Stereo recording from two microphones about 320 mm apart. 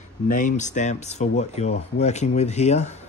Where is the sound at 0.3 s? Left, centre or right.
Left.